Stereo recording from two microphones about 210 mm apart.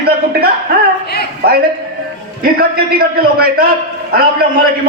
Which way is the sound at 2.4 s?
45° right (ahead or behind).